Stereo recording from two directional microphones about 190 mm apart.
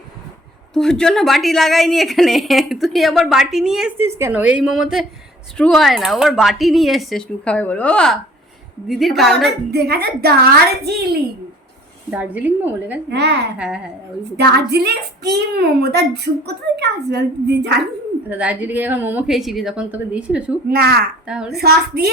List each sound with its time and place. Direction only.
0.7 s a woman's voice: 5° left (ahead or behind)
9.7 s a woman's voice: 55° right (ahead or behind)
12.1 s a woman's voice: 10° right (ahead or behind)
13.1 s a woman's voice: 60° right (ahead or behind)
13.6 s a woman's voice: 5° right (ahead or behind)
14.3 s a woman's voice: 60° right (ahead or behind)
18.3 s a woman's voice: 5° right (ahead or behind)
20.7 s speech: 50° right (ahead or behind)
21.2 s a child's voice: 5° right (ahead or behind)
21.5 s a woman's voice: 55° right (ahead or behind)